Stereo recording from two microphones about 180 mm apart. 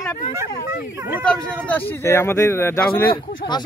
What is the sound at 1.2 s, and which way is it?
Speech, 5° left (ahead or behind).